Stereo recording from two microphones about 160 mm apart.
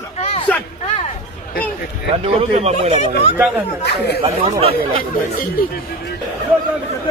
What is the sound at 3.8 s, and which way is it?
Speech, 90° left.